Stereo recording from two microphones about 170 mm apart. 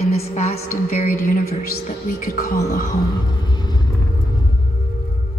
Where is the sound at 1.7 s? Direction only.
55° left (ahead or behind).